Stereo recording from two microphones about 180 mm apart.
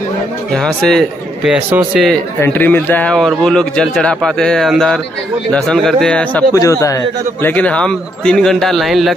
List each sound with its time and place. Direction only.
0.6 s a man's voice: 5° left (ahead or behind)
2.4 s a man's voice: 10° left (ahead or behind)
6.5 s a man's voice: 15° left (ahead or behind); by 9.1 s centre (ahead or behind)